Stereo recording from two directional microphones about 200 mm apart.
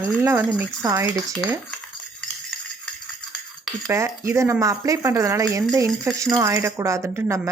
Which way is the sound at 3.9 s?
15° right (ahead or behind).